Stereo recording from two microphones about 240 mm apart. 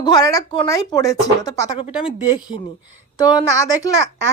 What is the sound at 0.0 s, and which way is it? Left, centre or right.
Speech, centre.